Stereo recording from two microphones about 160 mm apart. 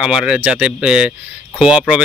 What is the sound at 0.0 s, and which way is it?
Speech, 5° right (ahead or behind).